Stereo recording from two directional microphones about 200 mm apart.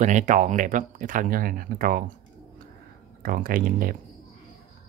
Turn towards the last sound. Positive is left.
turn(degrees=-45)  # may be behind; listen again after turning